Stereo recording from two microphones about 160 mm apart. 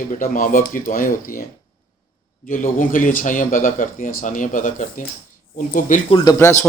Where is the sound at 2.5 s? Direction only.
55° left (ahead or behind).